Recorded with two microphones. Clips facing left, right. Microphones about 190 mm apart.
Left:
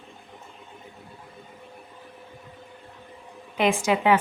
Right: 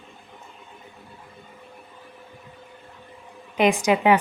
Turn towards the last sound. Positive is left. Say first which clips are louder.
# right 3 dB
turn(degrees=-15)  # may be behind; listen again after turning